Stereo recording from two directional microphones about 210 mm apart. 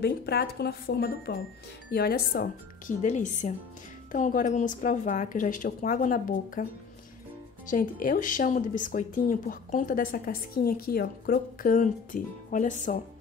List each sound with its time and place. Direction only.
0.0 s speech: 50° left (ahead or behind)
3.0 s speech: 35° left (ahead or behind)